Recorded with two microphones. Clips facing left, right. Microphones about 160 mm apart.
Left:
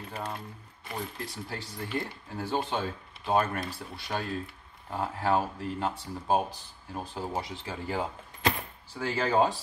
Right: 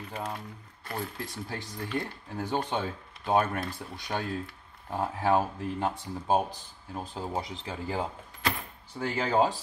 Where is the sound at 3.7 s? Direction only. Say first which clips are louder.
Right 1 dB; 20° right (ahead or behind).